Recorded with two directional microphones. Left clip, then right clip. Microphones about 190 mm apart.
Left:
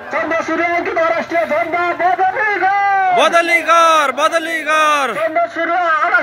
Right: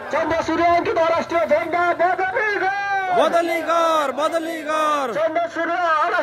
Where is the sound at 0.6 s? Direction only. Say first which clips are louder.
Right 1 dB; 40° right (ahead or behind).